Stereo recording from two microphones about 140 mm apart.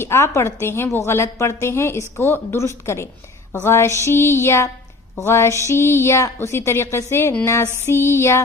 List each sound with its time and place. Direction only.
0.0 s a woman's voice: 20° left (ahead or behind)
3.5 s a sound: 15° left (ahead or behind)
5.2 s a woman's voice: 20° left (ahead or behind)